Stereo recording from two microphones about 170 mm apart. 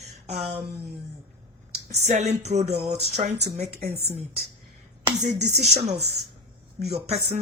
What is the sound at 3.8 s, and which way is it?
Speech, 65° right (ahead or behind).